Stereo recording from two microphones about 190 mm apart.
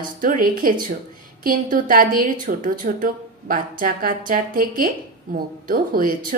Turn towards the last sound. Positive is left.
turn(degrees=-50)  # may be behind; listen again after turning